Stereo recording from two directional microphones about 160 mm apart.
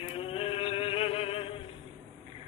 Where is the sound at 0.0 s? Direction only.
35° left (ahead or behind).